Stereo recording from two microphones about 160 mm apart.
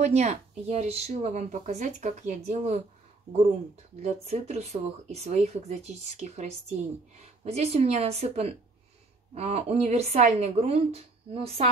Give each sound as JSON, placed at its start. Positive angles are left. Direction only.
{"t": 0.0, "sound": "speech", "side_deg": -45}
{"t": 4.0, "sound": "a woman's voice", "side_deg": -45}